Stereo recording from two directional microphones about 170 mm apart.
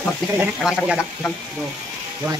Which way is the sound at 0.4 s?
5° right (ahead or behind).